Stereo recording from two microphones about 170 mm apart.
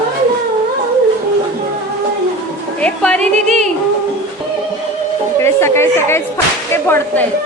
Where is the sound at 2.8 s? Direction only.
5° left (ahead or behind).